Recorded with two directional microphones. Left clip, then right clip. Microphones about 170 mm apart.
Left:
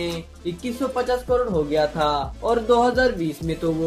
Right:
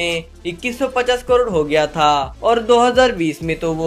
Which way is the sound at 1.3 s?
20° right (ahead or behind).